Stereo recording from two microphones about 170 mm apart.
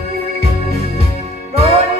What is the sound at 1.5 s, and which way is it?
Music, 35° right (ahead or behind).